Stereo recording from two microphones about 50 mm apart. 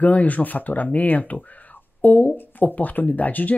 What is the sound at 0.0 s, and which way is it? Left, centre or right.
Speech, left.